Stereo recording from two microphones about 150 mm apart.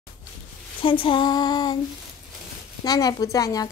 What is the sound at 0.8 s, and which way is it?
Speech, 35° left (ahead or behind).